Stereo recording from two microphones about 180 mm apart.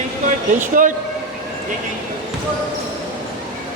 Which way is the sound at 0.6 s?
45° right (ahead or behind).